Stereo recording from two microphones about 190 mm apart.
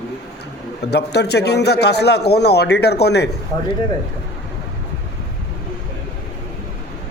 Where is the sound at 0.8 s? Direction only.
60° left (ahead or behind).